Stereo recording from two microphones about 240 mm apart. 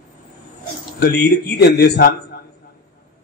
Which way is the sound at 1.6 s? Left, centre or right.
Left.